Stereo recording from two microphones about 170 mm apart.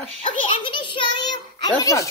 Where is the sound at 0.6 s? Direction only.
30° left (ahead or behind).